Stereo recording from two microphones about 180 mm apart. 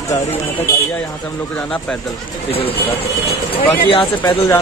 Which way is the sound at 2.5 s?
30° left (ahead or behind).